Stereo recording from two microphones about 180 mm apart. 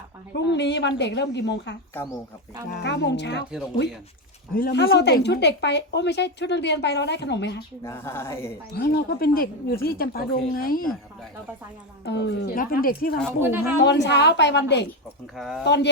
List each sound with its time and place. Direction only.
0.3 s speech: 75° left (ahead or behind)
4.5 s speech: 60° left (ahead or behind)
7.9 s speech: 15° left (ahead or behind)
8.7 s speech: 60° left (ahead or behind)
12.0 s speech: 70° left (ahead or behind); by 13.1 s 55° left (ahead or behind)
13.8 s speech: 75° left (ahead or behind)
15.4 s speech: centre (ahead or behind)
15.6 s speech: 70° left (ahead or behind)